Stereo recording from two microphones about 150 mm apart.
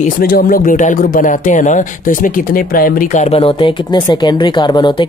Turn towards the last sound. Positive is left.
turn(degrees=30)  # may be behind; listen again after turning